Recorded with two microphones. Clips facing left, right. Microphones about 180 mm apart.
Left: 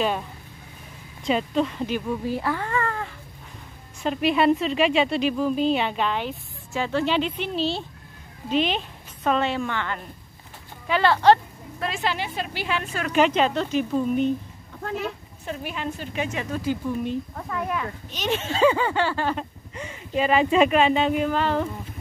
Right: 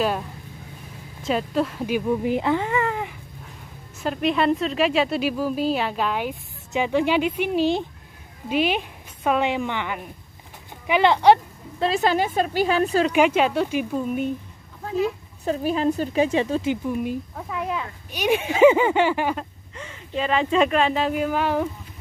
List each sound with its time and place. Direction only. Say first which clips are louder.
1.2 s speech: even; 5° right (ahead or behind)
4.0 s speech: left 1 dB; centre (ahead or behind); by 11.3 s 15° right (ahead or behind)
11.8 s a woman's voice: right 7 dB; 40° right (ahead or behind)
13.1 s speech: right 1 dB; 10° right (ahead or behind)
14.9 s a woman's voice: right 6 dB; 65° left (ahead or behind)
15.4 s a woman's voice: right 9 dB; 35° right (ahead or behind)
16.9 s speech: right 1 dB; 10° right (ahead or behind)
19.7 s speech: left 3 dB; 15° left (ahead or behind); by 21.6 s 10° right (ahead or behind)